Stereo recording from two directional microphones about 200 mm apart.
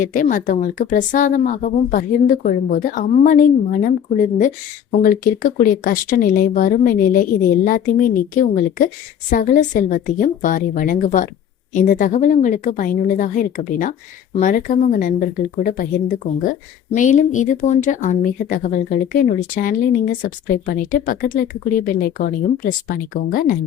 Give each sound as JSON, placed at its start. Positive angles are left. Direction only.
{"t": 0.0, "sound": "speech", "side_deg": 40}